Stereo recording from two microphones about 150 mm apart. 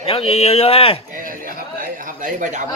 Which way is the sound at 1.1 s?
65° right (ahead or behind).